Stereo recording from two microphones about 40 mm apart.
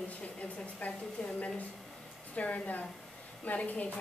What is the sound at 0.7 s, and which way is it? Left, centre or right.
A woman's voice, left.